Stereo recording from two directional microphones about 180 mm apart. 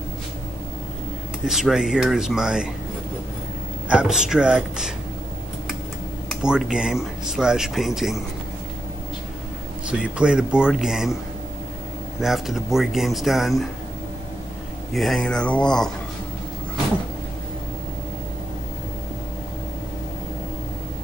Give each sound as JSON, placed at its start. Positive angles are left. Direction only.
{"t": 1.4, "sound": "speech", "side_deg": -5}
{"t": 3.9, "sound": "speech", "side_deg": -5}
{"t": 6.4, "sound": "speech", "side_deg": -5}
{"t": 9.8, "sound": "speech", "side_deg": -5}
{"t": 12.2, "sound": "speech", "side_deg": 0}
{"t": 15.0, "sound": "speech", "side_deg": 0}